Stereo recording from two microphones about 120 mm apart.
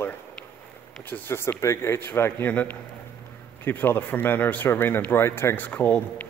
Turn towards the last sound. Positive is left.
turn(degrees=15)  # may be behind; listen again after turning